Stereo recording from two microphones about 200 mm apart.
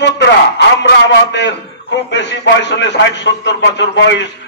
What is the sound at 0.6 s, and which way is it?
A man's voice, 60° left (ahead or behind).